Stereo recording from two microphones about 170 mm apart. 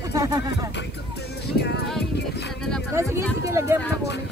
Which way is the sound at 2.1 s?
80° left.